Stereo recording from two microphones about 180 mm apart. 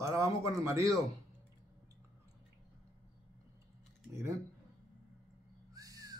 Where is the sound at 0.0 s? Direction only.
15° right (ahead or behind).